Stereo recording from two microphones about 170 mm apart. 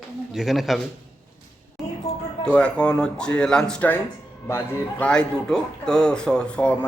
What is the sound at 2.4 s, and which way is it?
Speech, 5° left (ahead or behind).